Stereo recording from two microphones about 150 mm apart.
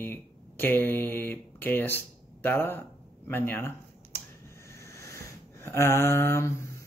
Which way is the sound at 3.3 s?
15° left (ahead or behind).